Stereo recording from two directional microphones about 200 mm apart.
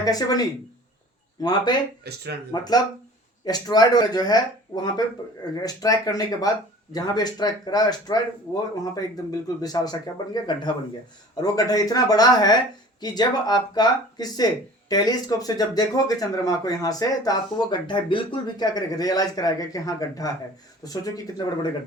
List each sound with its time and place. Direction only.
0.0 s speech: 20° left (ahead or behind)
2.0 s speech: 55° right (ahead or behind)
2.5 s speech: 20° left (ahead or behind)
9.6 s speech: 20° left (ahead or behind)